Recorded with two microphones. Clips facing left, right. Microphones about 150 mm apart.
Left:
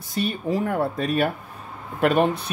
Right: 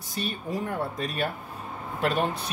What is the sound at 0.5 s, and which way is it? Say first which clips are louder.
Speech: left 7 dB; 65° left (ahead or behind).